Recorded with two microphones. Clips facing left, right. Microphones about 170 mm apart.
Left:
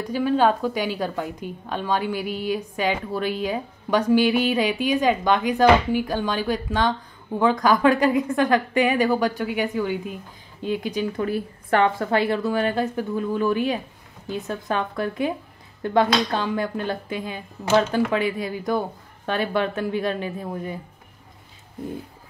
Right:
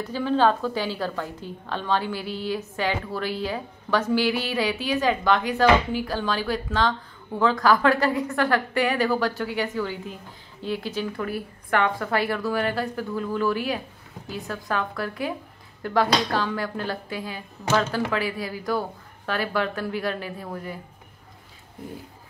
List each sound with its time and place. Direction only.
0.0 s a woman's voice: 15° left (ahead or behind)